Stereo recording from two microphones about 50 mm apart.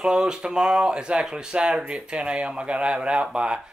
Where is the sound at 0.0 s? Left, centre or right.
Centre.